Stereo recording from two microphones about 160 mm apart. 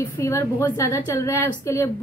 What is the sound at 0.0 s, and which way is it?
A woman's voice, 15° left (ahead or behind).